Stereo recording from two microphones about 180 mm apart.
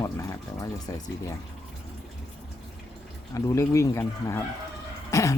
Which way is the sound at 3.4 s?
15° left (ahead or behind).